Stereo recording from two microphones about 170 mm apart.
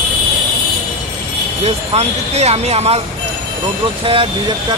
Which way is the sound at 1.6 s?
40° right (ahead or behind).